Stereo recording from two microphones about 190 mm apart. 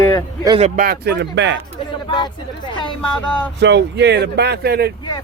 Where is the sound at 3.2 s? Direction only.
5° left (ahead or behind).